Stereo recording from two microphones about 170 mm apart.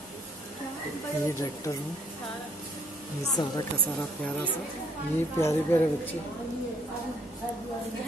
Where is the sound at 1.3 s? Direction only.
20° left (ahead or behind).